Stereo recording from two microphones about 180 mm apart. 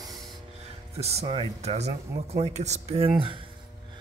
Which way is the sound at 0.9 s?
35° right (ahead or behind).